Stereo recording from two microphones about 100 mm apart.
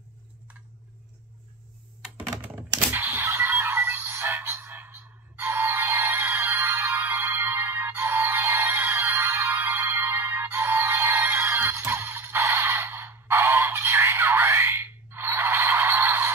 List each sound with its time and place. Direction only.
2.9 s music: 20° right (ahead or behind)